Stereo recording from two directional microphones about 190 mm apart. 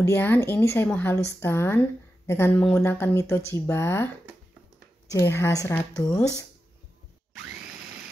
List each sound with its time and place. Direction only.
0.0 s a woman's voice: 10° left (ahead or behind)
5.1 s a woman's voice: 15° left (ahead or behind)